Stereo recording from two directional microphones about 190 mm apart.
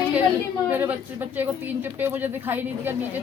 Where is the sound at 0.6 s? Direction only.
10° right (ahead or behind).